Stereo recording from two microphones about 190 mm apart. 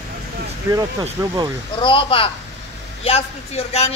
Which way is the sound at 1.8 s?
25° left (ahead or behind).